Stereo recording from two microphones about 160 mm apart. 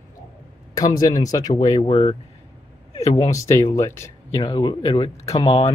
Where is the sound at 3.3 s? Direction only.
15° left (ahead or behind).